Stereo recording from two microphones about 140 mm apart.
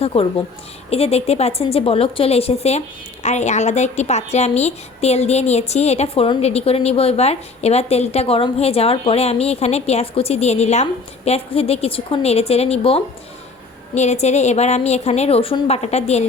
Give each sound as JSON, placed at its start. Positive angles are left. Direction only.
{"t": 0.0, "sound": "a woman's voice", "side_deg": 40}